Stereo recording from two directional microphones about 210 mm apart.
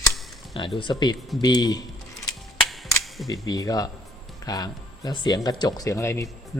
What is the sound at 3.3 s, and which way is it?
Speech, 15° left (ahead or behind).